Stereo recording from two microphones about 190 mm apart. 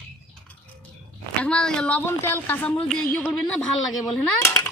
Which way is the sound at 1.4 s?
5° left (ahead or behind).